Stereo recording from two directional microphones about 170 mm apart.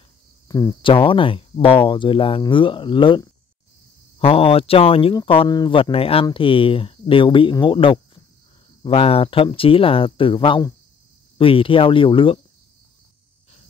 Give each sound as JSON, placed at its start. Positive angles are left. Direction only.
{"t": 0.5, "sound": "speech", "side_deg": 20}